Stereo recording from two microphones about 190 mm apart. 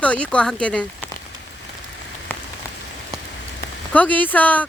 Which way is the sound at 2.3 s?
10° left (ahead or behind).